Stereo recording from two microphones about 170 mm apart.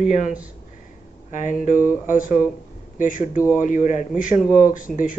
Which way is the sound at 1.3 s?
50° left (ahead or behind).